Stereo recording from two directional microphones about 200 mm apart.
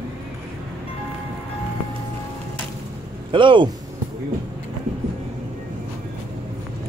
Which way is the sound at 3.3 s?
25° right (ahead or behind).